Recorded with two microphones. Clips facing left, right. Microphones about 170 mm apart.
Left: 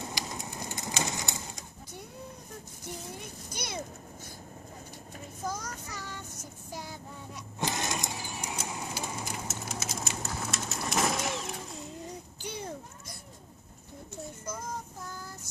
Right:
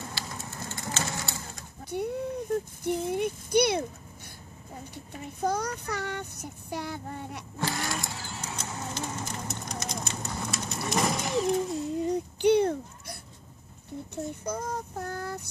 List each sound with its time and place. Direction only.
0.0 s bird: 15° left (ahead or behind)
1.9 s a sound: 65° right (ahead or behind)
2.8 s speech: 60° right (ahead or behind)
4.9 s child singing: 65° right (ahead or behind)
7.5 s vehicle: 20° left (ahead or behind); by 11.8 s centre (ahead or behind)
12.4 s goat: 65° right (ahead or behind)
14.1 s speech: 65° right (ahead or behind)